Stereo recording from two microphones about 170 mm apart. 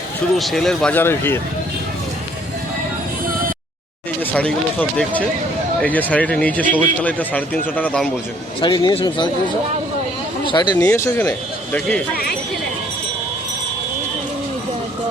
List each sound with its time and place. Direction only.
0.3 s speech: centre (ahead or behind)
4.2 s a man's voice: 10° left (ahead or behind)
8.6 s speech: 25° left (ahead or behind)
10.4 s speech: 25° left (ahead or behind)
10.8 s a man's voice: 10° left (ahead or behind)